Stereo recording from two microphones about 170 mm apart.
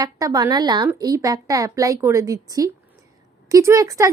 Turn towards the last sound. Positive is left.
turn(degrees=-20)  # may be behind; listen again after turning